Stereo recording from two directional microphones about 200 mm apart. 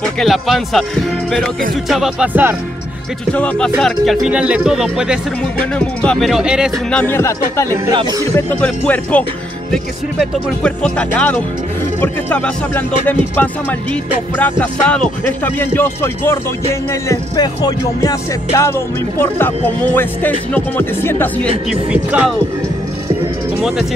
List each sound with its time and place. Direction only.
0.2 s speech: centre (ahead or behind)
3.3 s speech: 5° left (ahead or behind)
7.0 s music: 10° left (ahead or behind)
7.7 s speech: 20° right (ahead or behind)
8.5 s music: 5° left (ahead or behind)
10.6 s speech: 5° left (ahead or behind)
12.0 s music: 10° left (ahead or behind)